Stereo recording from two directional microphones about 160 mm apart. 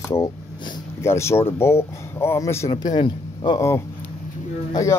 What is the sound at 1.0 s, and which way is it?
A man's voice, 15° left (ahead or behind).